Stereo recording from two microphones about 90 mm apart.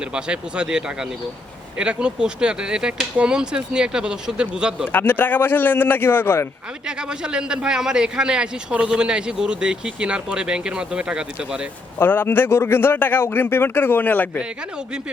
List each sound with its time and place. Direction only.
0.0 s a man's voice: 10° right (ahead or behind)
4.9 s a man's voice: 20° left (ahead or behind)
6.8 s a man's voice: 10° right (ahead or behind)
11.9 s a man's voice: 20° left (ahead or behind)
14.3 s a man's voice: 10° right (ahead or behind)